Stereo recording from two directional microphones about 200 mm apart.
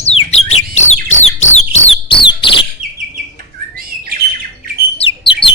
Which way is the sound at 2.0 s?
25° left (ahead or behind).